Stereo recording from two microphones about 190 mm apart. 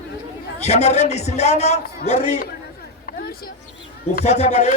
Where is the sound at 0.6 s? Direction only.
35° left (ahead or behind).